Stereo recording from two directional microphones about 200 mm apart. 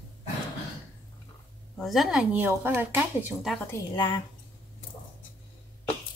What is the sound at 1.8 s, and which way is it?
Speech, centre (ahead or behind).